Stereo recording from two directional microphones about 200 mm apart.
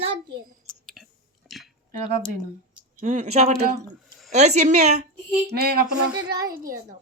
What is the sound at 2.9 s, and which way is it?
Speech, 35° right (ahead or behind).